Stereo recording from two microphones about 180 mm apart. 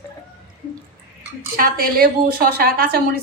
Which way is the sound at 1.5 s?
55° right (ahead or behind).